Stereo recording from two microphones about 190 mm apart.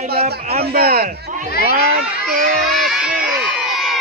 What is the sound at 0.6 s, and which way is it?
Speech, 55° right (ahead or behind).